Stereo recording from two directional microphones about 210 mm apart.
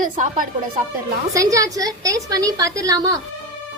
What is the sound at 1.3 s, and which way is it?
A woman's voice, 15° right (ahead or behind).